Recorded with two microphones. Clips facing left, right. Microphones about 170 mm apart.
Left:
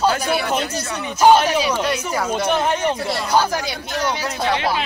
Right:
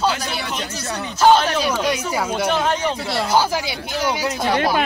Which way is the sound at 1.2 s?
10° left (ahead or behind).